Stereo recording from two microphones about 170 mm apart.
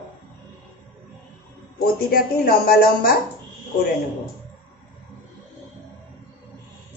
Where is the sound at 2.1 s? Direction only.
60° left (ahead or behind).